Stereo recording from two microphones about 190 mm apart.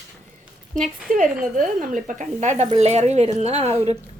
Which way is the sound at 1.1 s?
45° right (ahead or behind).